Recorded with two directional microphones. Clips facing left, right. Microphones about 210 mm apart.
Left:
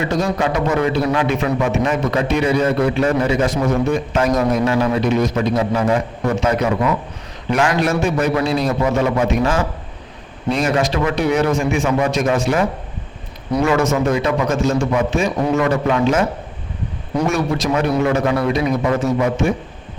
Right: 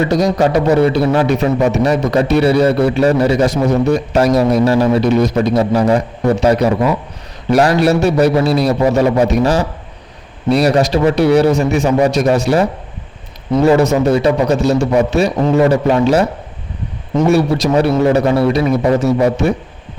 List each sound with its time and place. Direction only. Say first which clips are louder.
0.1 s a man's voice: right 6 dB; 40° right (ahead or behind)
17.7 s a man's voice: right 6 dB; 35° right (ahead or behind)